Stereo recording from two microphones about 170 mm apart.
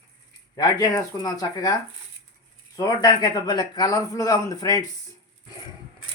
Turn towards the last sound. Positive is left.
turn(degrees=20)  # may be behind; listen again after turning